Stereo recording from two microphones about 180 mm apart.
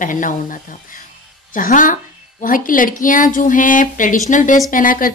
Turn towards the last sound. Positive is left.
turn(degrees=50)  # may be behind; listen again after turning